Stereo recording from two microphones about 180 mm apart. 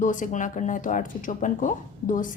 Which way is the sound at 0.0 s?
45° left (ahead or behind).